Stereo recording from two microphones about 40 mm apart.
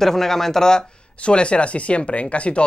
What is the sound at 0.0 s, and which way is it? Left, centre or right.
Speech, centre.